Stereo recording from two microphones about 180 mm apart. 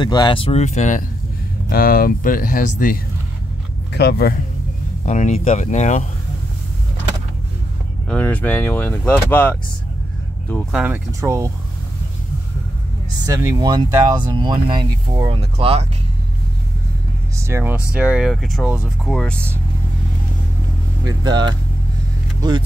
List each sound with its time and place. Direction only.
0.0 s speech: 25° left (ahead or behind); by 1.0 s 40° left (ahead or behind)
1.7 s speech: 55° left (ahead or behind)
3.9 s speech: 65° left (ahead or behind)
5.0 s speech: 40° left (ahead or behind)
8.1 s speech: 10° left (ahead or behind)
10.8 s speech: 15° right (ahead or behind)
13.2 s speech: 20° right (ahead or behind)
17.4 s speech: 15° right (ahead or behind); by 19.5 s 5° left (ahead or behind)
21.0 s speech: 20° right (ahead or behind)